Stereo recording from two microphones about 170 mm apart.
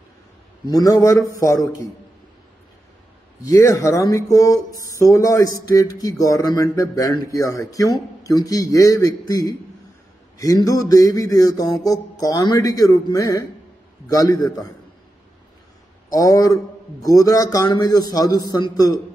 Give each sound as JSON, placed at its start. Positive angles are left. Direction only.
{"t": 0.7, "sound": "speech", "side_deg": 20}
{"t": 3.4, "sound": "speech", "side_deg": 20}
{"t": 16.1, "sound": "speech", "side_deg": 20}